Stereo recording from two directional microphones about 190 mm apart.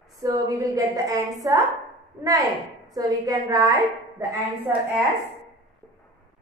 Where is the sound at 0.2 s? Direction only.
20° right (ahead or behind).